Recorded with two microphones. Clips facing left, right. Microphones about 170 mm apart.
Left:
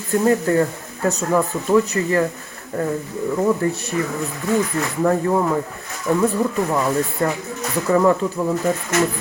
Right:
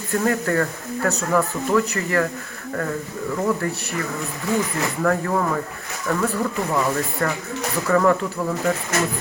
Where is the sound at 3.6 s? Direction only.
20° left (ahead or behind).